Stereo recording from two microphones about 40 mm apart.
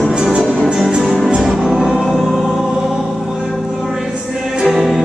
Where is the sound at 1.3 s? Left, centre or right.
Centre.